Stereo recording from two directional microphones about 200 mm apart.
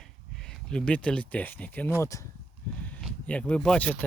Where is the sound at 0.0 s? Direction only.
Centre (ahead or behind).